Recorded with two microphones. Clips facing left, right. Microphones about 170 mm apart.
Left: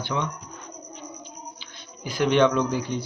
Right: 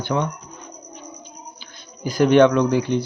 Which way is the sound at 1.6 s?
45° right (ahead or behind).